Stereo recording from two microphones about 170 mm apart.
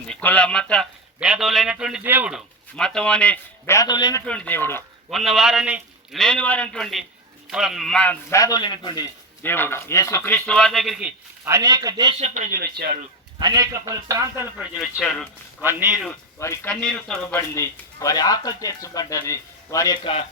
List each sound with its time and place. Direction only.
0.1 s a man's voice: 10° left (ahead or behind); by 2.4 s 10° right (ahead or behind)
2.7 s speech: 5° left (ahead or behind); by 4.2 s 25° left (ahead or behind)
4.3 s speech: 10° left (ahead or behind)
5.1 s a man's voice: centre (ahead or behind)
8.4 s speech: 20° left (ahead or behind)
9.4 s speech: 10° left (ahead or behind)
11.4 s a man's voice: 20° right (ahead or behind)
12.2 s speech: 50° right (ahead or behind); by 13.0 s 70° right (ahead or behind)
13.4 s a man's voice: 25° right (ahead or behind)
14.9 s a man's voice: 5° left (ahead or behind)
15.6 s speech: 10° right (ahead or behind)
16.4 s speech: 15° left (ahead or behind)
16.8 s a man's voice: 5° left (ahead or behind)
17.5 s speech: 15° left (ahead or behind)